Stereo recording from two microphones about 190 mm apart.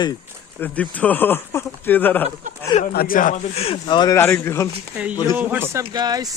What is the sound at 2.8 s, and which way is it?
Speech, 45° left (ahead or behind).